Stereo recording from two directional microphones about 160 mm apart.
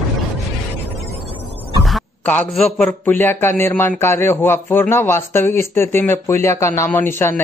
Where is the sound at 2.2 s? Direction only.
5° left (ahead or behind).